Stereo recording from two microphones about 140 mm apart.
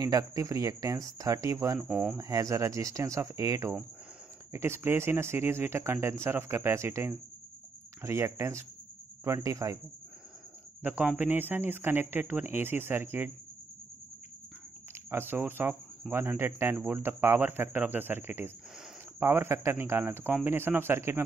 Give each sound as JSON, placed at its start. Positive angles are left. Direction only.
{"t": 0.0, "sound": "speech", "side_deg": -25}
{"t": 1.8, "sound": "speech", "side_deg": -5}
{"t": 2.1, "sound": "speech", "side_deg": -25}
{"t": 10.8, "sound": "speech", "side_deg": -10}
{"t": 14.9, "sound": "speech", "side_deg": -15}